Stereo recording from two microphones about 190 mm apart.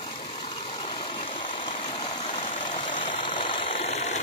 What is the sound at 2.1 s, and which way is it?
Vehicle, 35° left (ahead or behind).